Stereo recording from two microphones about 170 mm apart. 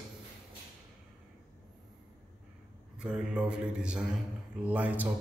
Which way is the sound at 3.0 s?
5° right (ahead or behind).